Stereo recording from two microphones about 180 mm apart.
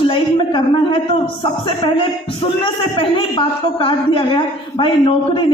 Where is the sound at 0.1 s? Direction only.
30° left (ahead or behind).